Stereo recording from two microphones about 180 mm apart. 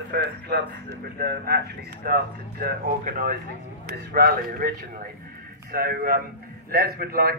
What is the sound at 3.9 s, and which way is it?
Speech, 60° right (ahead or behind).